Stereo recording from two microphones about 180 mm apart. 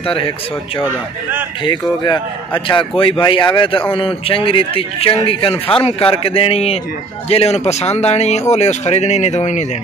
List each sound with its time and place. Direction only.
1.6 s speech: 25° left (ahead or behind)